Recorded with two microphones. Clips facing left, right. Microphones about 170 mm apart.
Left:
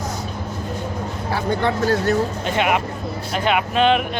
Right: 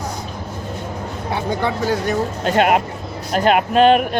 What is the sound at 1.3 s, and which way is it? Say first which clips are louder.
Speech: even; 15° right (ahead or behind).